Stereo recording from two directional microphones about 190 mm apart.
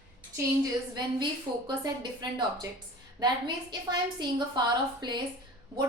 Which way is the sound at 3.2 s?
25° right (ahead or behind).